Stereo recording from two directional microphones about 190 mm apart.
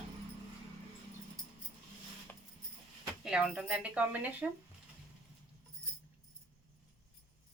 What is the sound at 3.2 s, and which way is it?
Speech, 5° right (ahead or behind).